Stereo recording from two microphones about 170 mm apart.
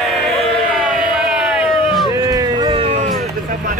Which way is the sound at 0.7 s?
Centre (ahead or behind).